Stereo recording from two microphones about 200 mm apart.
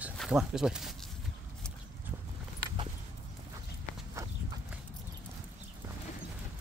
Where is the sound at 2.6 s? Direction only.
25° right (ahead or behind).